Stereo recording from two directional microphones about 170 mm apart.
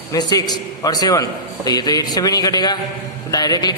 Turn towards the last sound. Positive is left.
turn(degrees=25)  # may be behind; listen again after turning